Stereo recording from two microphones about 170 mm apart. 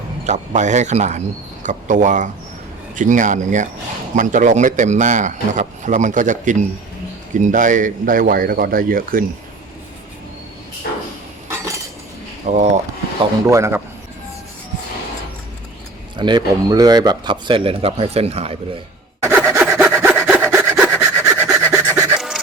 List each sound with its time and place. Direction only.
0.3 s a man's voice: 45° right (ahead or behind)
10.8 s a sound: 60° left (ahead or behind)
12.5 s a man's voice: 45° right (ahead or behind)
13.5 s a man's voice: 15° right (ahead or behind)
16.1 s speech: 25° right (ahead or behind)
19.2 s sawing: 15° right (ahead or behind)